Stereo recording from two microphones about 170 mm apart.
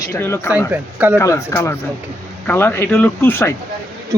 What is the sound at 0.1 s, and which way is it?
Speech, 15° left (ahead or behind).